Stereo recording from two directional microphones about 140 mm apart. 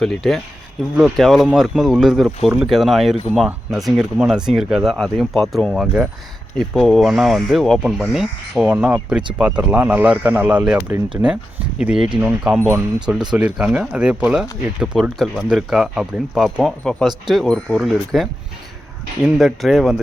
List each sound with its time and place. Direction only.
0.0 s speech: centre (ahead or behind)
12.5 s speech: 15° right (ahead or behind)
13.1 s speech: 5° right (ahead or behind)